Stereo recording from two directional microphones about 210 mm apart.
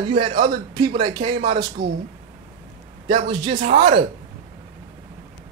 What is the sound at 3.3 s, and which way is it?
Speech, 20° right (ahead or behind).